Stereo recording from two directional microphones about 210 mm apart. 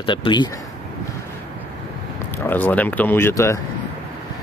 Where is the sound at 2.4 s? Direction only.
10° left (ahead or behind).